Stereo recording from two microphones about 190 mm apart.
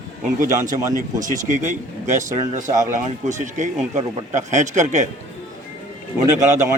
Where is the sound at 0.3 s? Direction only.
40° right (ahead or behind).